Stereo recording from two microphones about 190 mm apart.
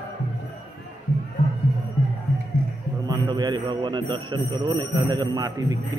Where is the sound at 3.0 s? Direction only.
20° right (ahead or behind).